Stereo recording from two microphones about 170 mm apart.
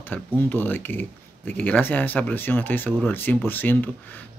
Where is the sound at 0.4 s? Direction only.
10° left (ahead or behind).